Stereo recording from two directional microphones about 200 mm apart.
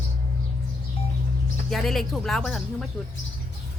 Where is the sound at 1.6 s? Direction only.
Centre (ahead or behind).